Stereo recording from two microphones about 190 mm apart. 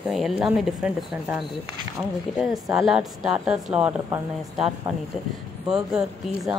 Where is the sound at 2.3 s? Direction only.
Centre (ahead or behind).